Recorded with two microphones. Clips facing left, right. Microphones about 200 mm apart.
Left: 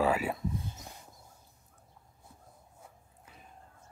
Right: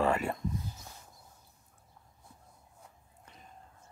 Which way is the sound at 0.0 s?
5° left (ahead or behind).